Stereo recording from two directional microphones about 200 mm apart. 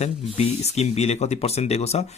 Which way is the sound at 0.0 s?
35° left (ahead or behind).